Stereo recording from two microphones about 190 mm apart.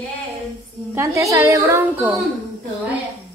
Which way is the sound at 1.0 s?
15° right (ahead or behind).